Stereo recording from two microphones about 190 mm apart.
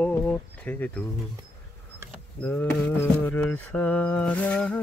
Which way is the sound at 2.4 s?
10° left (ahead or behind).